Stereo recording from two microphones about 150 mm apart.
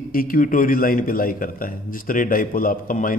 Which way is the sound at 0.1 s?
70° left (ahead or behind).